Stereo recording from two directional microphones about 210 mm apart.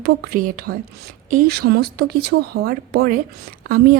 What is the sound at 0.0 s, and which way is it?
A woman's voice, 40° right (ahead or behind).